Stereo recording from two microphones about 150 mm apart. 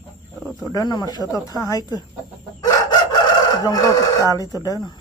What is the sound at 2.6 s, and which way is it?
Chicken, 25° left (ahead or behind).